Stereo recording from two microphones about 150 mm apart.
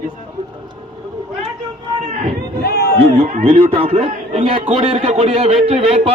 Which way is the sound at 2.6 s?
90° left.